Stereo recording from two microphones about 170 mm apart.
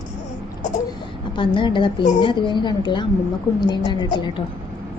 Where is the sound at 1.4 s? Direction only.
30° left (ahead or behind).